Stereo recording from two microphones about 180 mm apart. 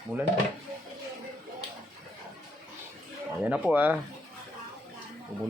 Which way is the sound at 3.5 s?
10° right (ahead or behind).